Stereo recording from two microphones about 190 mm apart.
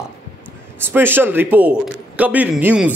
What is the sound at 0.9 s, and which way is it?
A man's voice, 10° right (ahead or behind).